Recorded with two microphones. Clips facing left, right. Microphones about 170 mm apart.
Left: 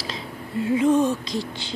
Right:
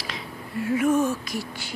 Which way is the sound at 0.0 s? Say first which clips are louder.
Left 2 dB; 25° left (ahead or behind).